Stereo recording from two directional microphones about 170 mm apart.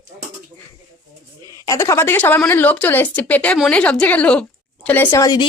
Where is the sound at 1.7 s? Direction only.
15° left (ahead or behind).